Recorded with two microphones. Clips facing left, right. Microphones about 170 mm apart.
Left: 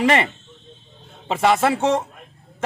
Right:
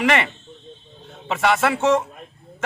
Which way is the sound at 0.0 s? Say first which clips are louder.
Left 2 dB; 30° left (ahead or behind).